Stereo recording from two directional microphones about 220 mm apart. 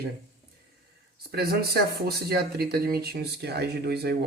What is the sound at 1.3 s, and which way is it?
Speech, 45° right (ahead or behind).